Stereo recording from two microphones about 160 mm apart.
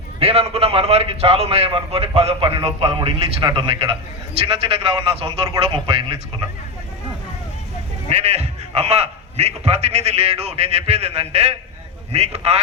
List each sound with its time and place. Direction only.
0.2 s a man's voice: 40° right (ahead or behind)
8.1 s a man's voice: 40° right (ahead or behind)